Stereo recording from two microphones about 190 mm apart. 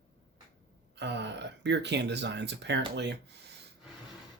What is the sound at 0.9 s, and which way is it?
Speech, 65° right (ahead or behind).